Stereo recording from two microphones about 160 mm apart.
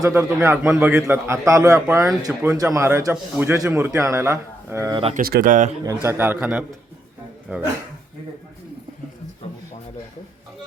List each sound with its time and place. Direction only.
0.0 s a man's voice: 15° right (ahead or behind)
5.1 s speech: 65° right (ahead or behind)
5.8 s a man's voice: 20° right (ahead or behind)